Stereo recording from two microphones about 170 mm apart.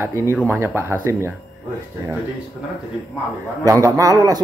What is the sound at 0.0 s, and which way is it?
Speech, 15° right (ahead or behind).